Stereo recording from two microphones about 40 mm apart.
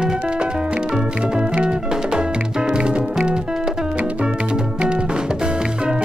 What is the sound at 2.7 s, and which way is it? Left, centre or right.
Music, right.